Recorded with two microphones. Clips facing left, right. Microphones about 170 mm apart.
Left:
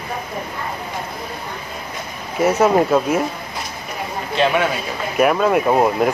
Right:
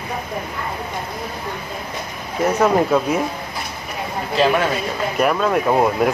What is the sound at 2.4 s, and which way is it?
Speech, 5° left (ahead or behind).